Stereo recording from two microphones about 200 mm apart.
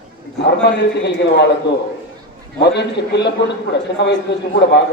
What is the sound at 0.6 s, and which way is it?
Speech, 60° left (ahead or behind).